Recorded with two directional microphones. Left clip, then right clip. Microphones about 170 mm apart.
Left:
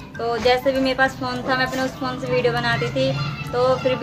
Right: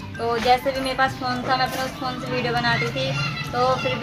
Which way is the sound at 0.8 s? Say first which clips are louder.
Left 2 dB; 40° left (ahead or behind).